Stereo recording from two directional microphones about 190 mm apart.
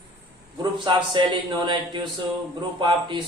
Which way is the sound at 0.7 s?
25° right (ahead or behind).